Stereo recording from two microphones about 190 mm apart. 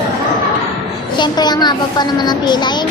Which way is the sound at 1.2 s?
20° left (ahead or behind).